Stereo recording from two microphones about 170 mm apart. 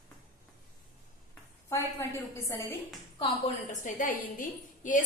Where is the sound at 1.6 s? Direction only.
15° left (ahead or behind).